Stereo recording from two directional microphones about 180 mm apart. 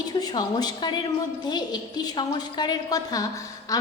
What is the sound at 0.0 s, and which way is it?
A woman's voice, 20° left (ahead or behind).